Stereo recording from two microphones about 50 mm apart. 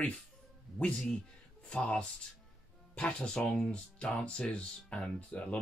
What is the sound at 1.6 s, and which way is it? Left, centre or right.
Speech, left.